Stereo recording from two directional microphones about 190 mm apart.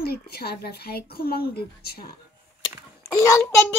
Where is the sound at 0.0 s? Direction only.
55° left (ahead or behind).